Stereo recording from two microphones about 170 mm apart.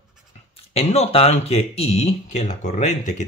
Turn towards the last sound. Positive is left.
turn(degrees=45)  # may be behind; listen again after turning